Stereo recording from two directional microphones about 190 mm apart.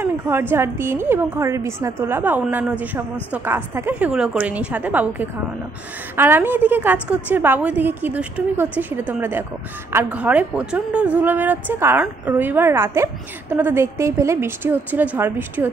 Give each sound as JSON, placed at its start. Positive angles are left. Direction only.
{"t": 0.0, "sound": "a woman's voice", "side_deg": -10}